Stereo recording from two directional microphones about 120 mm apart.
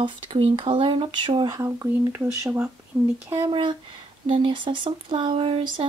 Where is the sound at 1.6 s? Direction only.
20° right (ahead or behind).